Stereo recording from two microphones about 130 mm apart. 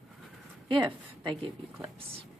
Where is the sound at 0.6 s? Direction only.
35° right (ahead or behind).